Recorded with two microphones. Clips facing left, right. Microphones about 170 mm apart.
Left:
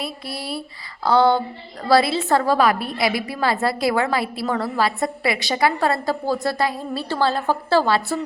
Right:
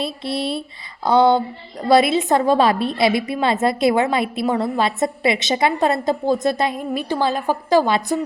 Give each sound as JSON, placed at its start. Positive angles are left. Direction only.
{"t": 0.0, "sound": "a woman's voice", "side_deg": -25}